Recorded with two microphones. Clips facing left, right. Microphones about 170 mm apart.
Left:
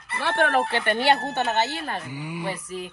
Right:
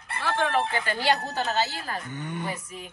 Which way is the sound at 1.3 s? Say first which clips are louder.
Left 3 dB; 25° left (ahead or behind).